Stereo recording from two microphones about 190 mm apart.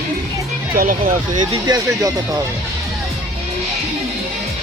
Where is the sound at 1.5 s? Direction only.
20° right (ahead or behind).